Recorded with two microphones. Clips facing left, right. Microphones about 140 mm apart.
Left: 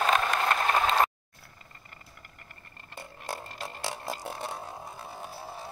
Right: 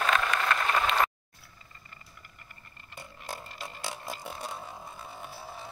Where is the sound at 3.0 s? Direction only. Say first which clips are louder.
Left 3 dB; 40° left (ahead or behind).